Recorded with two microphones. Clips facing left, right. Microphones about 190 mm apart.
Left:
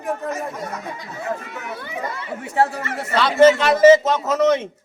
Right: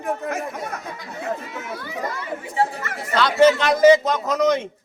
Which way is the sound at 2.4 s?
65° left (ahead or behind).